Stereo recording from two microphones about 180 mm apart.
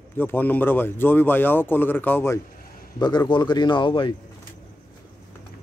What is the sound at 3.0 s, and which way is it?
Speech, 25° left (ahead or behind).